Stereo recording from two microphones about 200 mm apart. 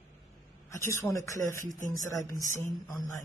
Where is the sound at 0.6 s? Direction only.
15° left (ahead or behind).